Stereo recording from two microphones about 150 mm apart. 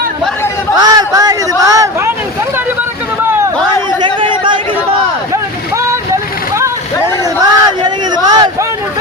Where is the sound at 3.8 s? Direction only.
30° right (ahead or behind).